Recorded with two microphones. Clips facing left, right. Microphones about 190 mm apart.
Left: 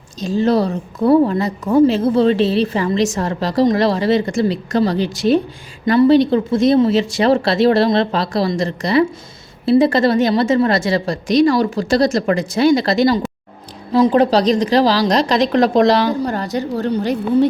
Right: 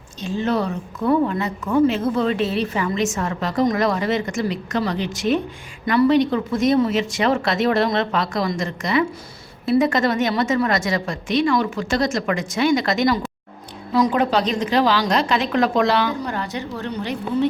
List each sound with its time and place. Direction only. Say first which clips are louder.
0.2 s a woman's voice: left 6 dB; 35° left (ahead or behind)